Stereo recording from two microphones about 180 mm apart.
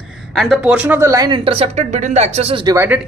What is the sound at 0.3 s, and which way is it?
Speech, centre (ahead or behind).